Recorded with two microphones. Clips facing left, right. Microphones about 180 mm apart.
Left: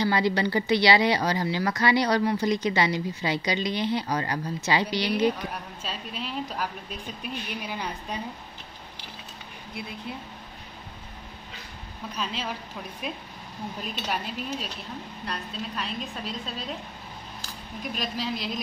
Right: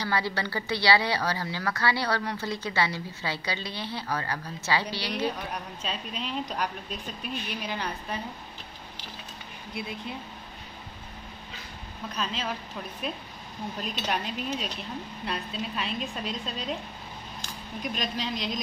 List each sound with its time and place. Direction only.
0.0 s speech: 20° left (ahead or behind)
5.5 s speech: 5° left (ahead or behind)
12.2 s a woman's voice: 10° left (ahead or behind)
17.9 s speech: 5° left (ahead or behind)